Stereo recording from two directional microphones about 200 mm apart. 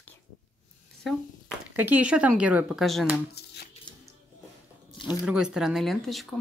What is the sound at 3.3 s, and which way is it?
Speech, 55° left (ahead or behind).